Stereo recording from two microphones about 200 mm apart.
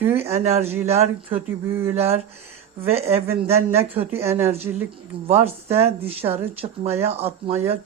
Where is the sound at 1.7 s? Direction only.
10° right (ahead or behind).